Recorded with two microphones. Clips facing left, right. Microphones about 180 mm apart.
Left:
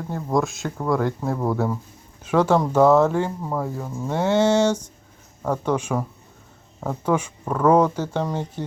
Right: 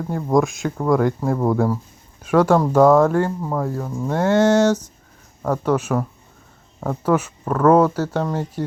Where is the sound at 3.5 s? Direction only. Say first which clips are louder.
Right 3 dB; 5° left (ahead or behind).